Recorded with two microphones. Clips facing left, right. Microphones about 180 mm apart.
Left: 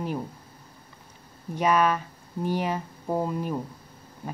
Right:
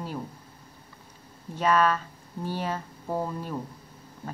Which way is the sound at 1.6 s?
15° left (ahead or behind).